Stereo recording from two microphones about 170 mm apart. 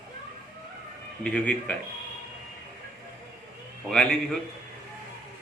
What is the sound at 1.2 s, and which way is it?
Speech, 10° left (ahead or behind).